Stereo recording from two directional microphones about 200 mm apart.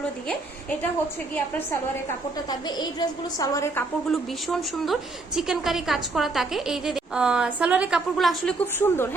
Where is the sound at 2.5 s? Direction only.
20° left (ahead or behind).